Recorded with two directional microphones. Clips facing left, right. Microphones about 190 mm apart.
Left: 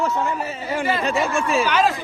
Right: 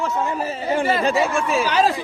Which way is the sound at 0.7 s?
35° right (ahead or behind).